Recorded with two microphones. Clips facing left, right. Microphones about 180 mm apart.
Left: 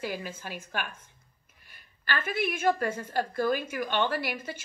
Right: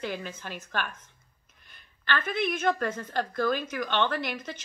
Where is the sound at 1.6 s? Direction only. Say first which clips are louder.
Even; 5° left (ahead or behind).